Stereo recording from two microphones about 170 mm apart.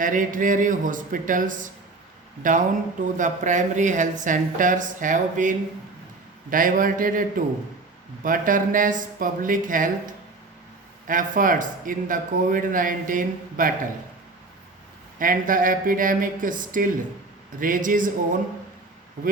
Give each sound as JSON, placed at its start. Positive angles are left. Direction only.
{"t": 0.0, "sound": "speech", "side_deg": -50}
{"t": 11.0, "sound": "speech", "side_deg": -50}
{"t": 15.2, "sound": "speech", "side_deg": -50}